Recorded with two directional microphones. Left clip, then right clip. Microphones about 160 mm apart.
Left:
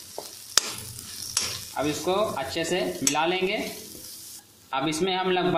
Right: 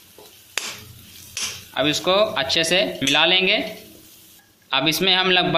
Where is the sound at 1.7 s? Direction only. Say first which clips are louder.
Right 8 dB; 15° right (ahead or behind).